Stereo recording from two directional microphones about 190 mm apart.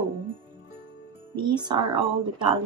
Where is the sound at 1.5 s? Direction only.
25° right (ahead or behind).